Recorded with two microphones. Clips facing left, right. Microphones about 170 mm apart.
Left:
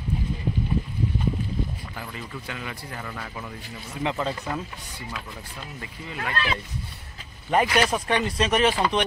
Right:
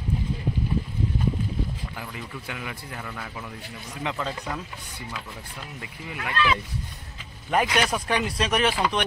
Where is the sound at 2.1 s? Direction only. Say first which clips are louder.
Even; 10° right (ahead or behind); by 4.3 s 5° left (ahead or behind).